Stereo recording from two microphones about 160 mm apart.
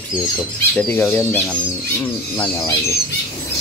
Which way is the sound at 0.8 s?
10° left (ahead or behind).